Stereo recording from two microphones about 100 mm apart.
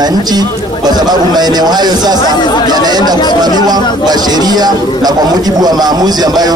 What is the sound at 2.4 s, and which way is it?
Speech, 45° left (ahead or behind).